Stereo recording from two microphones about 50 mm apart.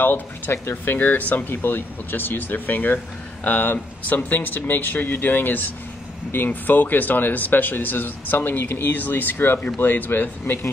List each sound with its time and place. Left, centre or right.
0.0 s speech: left